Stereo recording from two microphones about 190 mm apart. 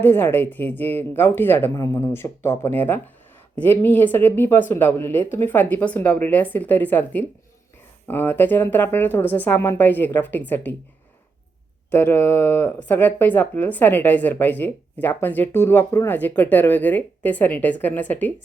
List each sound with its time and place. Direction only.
0.0 s speech: 10° left (ahead or behind)
11.9 s speech: 10° left (ahead or behind)